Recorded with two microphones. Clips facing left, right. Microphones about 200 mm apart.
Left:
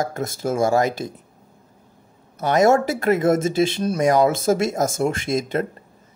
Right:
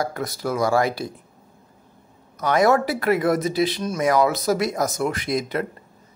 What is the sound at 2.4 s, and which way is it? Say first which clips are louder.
Speech: left 2 dB; 25° left (ahead or behind).